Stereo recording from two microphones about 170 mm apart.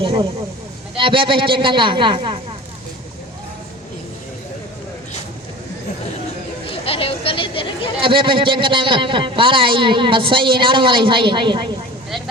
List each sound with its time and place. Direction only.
0.0 s a man's voice: 25° right (ahead or behind)
6.7 s a sound: 35° left (ahead or behind)
8.0 s a man's voice: 30° right (ahead or behind)